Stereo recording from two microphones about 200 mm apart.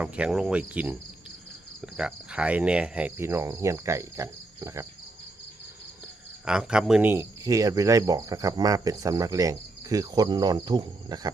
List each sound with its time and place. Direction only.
0.0 s cricket: 5° right (ahead or behind)
1.8 s speech: 5° right (ahead or behind)
6.4 s speech: 5° right (ahead or behind); by 11.3 s 20° right (ahead or behind)